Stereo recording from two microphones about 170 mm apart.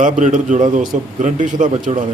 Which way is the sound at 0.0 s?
45° right (ahead or behind).